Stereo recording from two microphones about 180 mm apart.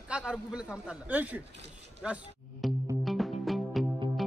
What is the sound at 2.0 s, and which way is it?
Music, 5° right (ahead or behind).